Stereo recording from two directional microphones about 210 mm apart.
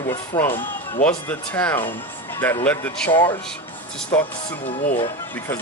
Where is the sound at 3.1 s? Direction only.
20° left (ahead or behind).